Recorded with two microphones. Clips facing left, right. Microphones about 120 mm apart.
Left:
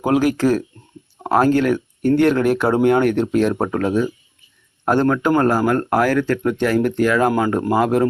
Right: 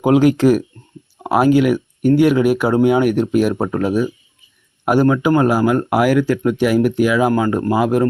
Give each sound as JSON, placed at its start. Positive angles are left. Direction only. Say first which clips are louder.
{"t": 0.0, "sound": "speech", "louder": "right 4 dB", "side_deg": -20}